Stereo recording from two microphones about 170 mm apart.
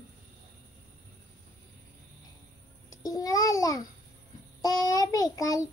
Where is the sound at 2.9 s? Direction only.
20° left (ahead or behind).